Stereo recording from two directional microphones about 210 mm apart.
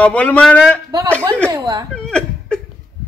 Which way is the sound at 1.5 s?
20° right (ahead or behind).